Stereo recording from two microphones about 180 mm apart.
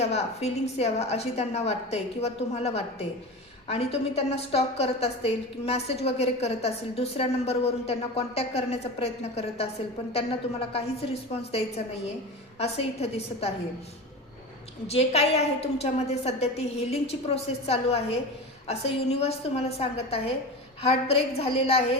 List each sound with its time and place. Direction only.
0.0 s a woman's voice: 35° left (ahead or behind)
10.7 s a woman's voice: 35° left (ahead or behind)
14.8 s a woman's voice: 35° left (ahead or behind)